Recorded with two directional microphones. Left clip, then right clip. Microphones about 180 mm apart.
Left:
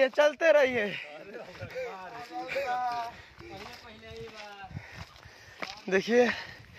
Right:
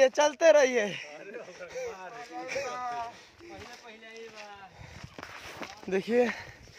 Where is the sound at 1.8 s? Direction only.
30° right (ahead or behind).